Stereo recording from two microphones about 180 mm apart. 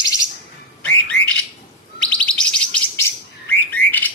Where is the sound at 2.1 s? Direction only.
5° left (ahead or behind).